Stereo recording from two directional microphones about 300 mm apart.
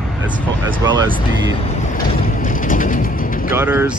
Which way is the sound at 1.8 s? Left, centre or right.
Left.